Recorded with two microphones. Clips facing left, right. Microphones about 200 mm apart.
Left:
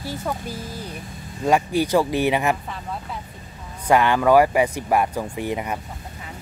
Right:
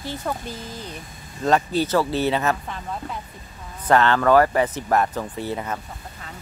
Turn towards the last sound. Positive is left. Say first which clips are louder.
# left 2 dB
turn(degrees=15)  # may be behind; listen again after turning